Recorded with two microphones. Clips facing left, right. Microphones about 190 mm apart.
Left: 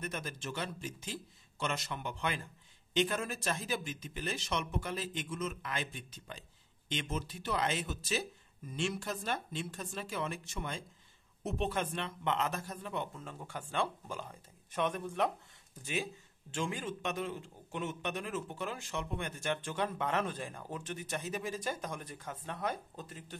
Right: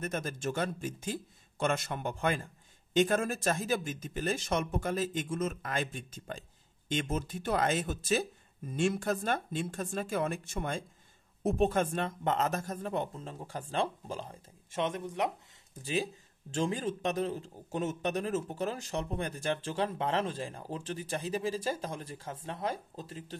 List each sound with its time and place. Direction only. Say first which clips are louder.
0.0 s a man's voice: right 6 dB; 45° right (ahead or behind); by 15.3 s 20° right (ahead or behind)
15.8 s a man's voice: right 5 dB; 35° right (ahead or behind)